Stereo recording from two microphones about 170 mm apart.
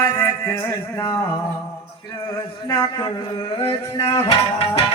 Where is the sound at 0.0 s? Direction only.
15° left (ahead or behind).